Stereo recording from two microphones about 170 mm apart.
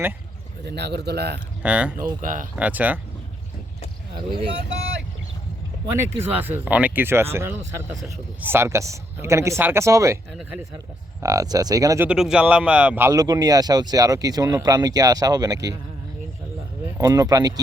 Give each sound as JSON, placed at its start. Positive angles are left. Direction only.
{"t": 0.6, "sound": "a man's voice", "side_deg": -80}
{"t": 1.6, "sound": "a man's voice", "side_deg": -5}
{"t": 2.2, "sound": "speech", "side_deg": -50}
{"t": 2.6, "sound": "a man's voice", "side_deg": -10}
{"t": 6.0, "sound": "a man's voice", "side_deg": -10}
{"t": 11.2, "sound": "speech", "side_deg": -20}
{"t": 12.0, "sound": "speech", "side_deg": -5}
{"t": 13.1, "sound": "speech", "side_deg": -20}
{"t": 17.0, "sound": "speech", "side_deg": -20}